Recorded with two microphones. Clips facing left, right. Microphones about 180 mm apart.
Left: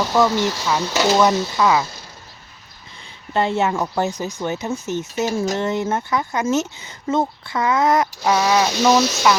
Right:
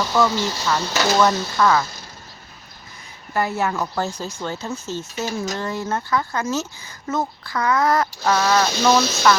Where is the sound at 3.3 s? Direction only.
25° left (ahead or behind).